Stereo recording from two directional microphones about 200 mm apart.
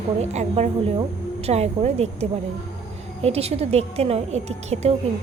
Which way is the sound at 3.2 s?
30° right (ahead or behind).